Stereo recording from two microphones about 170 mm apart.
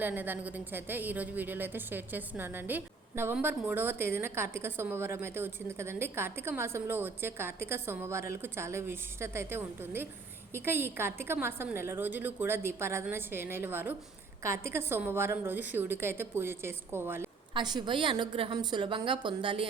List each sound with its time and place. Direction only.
0.0 s a woman's voice: 10° right (ahead or behind)
17.5 s a woman's voice: 25° right (ahead or behind)